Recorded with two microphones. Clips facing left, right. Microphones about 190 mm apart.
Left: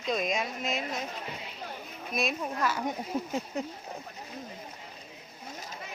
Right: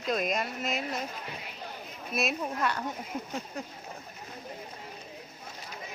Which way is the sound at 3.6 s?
20° left (ahead or behind).